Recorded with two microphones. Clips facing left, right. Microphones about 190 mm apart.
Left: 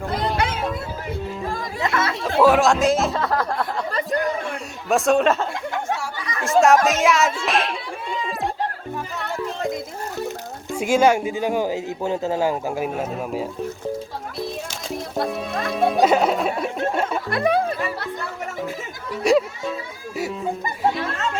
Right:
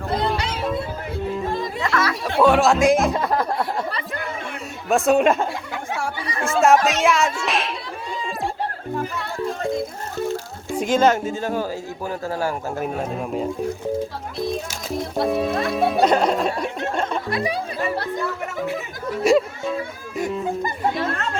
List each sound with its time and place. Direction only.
0.3 s music: 55° left (ahead or behind)
1.8 s chatter: 25° left (ahead or behind)
2.4 s music: centre (ahead or behind)
2.8 s speech: 15° right (ahead or behind)
3.9 s a sound: 40° left (ahead or behind)
4.9 s music: centre (ahead or behind)
5.2 s speech: 10° right (ahead or behind)
6.4 s music: centre (ahead or behind)
10.8 s speech: 10° left (ahead or behind)
14.7 s speech: centre (ahead or behind)
16.6 s a sound: 5° left (ahead or behind)
17.3 s music: 55° left (ahead or behind)
19.2 s a sound: centre (ahead or behind)
20.1 s music: 5° left (ahead or behind)